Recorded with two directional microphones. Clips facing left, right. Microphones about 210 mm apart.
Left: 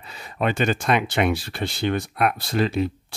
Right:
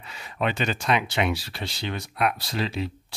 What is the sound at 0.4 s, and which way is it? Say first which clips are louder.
Speech: left 4 dB; 45° left (ahead or behind).